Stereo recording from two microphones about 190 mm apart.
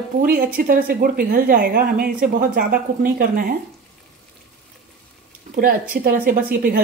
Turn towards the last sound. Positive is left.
turn(degrees=-50)  # may be behind; listen again after turning